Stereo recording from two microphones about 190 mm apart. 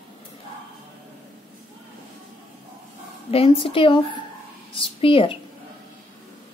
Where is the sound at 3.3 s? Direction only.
30° left (ahead or behind).